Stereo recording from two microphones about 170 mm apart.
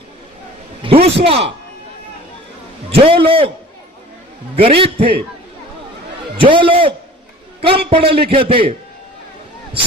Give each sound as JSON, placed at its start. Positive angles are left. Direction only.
{"t": 0.8, "sound": "a man's voice", "side_deg": -35}
{"t": 2.9, "sound": "a man's voice", "side_deg": -35}
{"t": 4.5, "sound": "a man's voice", "side_deg": -35}
{"t": 6.4, "sound": "a man's voice", "side_deg": -30}